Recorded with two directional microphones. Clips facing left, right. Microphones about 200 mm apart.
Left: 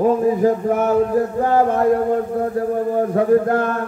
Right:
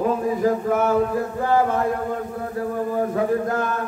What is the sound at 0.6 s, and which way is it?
A man's voice, 50° left (ahead or behind).